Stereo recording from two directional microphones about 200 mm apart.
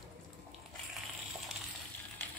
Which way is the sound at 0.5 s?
Centre (ahead or behind).